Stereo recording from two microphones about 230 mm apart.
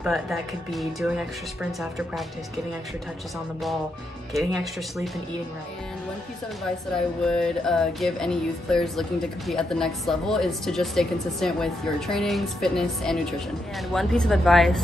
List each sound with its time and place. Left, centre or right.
0.0 s a woman's voice: centre
4.3 s a woman's voice: centre
7.2 s a woman's voice: centre